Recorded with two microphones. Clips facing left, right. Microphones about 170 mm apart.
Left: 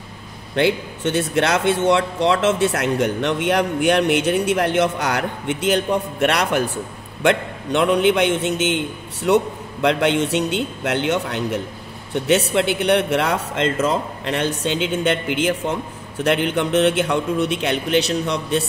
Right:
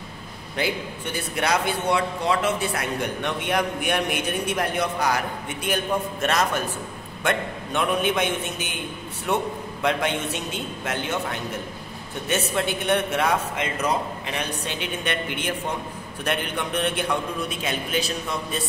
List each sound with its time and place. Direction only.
0.6 s a man's voice: 80° left
13.8 s a man's voice: 90° left